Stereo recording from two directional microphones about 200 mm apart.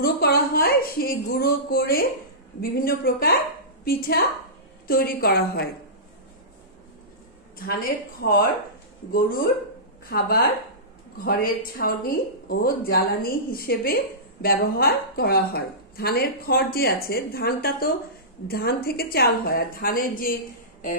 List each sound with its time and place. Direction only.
0.0 s a woman's voice: 50° left (ahead or behind)
7.5 s a woman's voice: 45° left (ahead or behind)
10.0 s a woman's voice: 50° left (ahead or behind)